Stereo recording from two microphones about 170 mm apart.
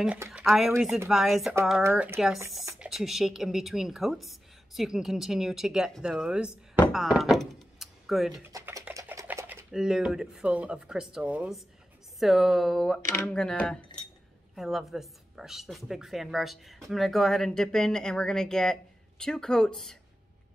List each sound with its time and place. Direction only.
0.0 s a woman's voice: 5° right (ahead or behind)
1.8 s speech: 10° right (ahead or behind)
2.8 s a woman's voice: centre (ahead or behind)
6.7 s thunk: centre (ahead or behind)
8.5 s a sound: 20° right (ahead or behind)
9.7 s a woman's voice: 5° right (ahead or behind)